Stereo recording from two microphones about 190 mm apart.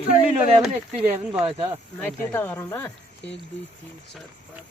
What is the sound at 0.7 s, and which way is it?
A man's voice, 35° right (ahead or behind).